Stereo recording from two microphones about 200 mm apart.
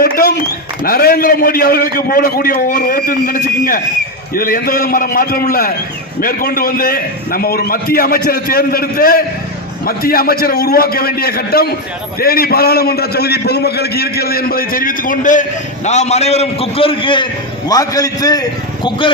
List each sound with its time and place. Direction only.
0.0 s a man's voice: 50° left (ahead or behind); by 19.1 s 25° left (ahead or behind)